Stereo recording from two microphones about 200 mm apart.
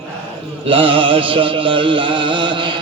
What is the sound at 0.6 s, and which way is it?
Mantra, 25° right (ahead or behind).